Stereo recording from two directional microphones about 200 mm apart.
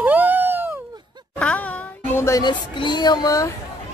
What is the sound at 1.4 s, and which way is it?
Speech, 5° left (ahead or behind).